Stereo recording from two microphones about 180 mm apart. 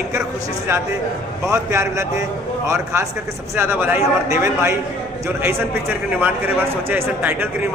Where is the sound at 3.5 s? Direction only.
15° right (ahead or behind).